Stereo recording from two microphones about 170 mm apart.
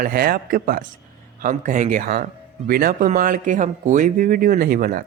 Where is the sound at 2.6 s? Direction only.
60° right (ahead or behind).